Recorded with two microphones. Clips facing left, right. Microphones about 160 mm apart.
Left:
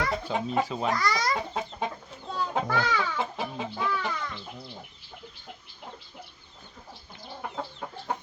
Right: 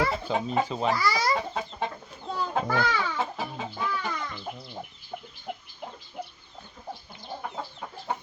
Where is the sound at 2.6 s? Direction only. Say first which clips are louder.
Right 2 dB; centre (ahead or behind).